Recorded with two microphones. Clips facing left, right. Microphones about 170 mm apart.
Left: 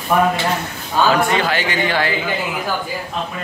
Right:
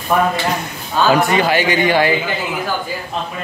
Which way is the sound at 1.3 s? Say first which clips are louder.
Right 4 dB; 15° right (ahead or behind).